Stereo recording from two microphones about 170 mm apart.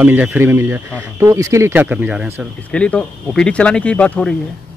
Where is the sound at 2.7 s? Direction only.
5° left (ahead or behind).